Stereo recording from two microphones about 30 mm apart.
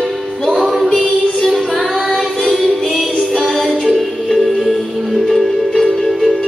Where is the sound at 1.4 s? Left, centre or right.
Centre.